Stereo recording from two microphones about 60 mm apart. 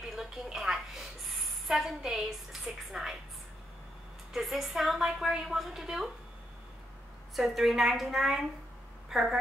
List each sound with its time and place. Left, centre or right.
0.0 s a sound: centre
1.3 s a woman's voice: centre
4.3 s a woman's voice: centre
7.3 s a woman's voice: centre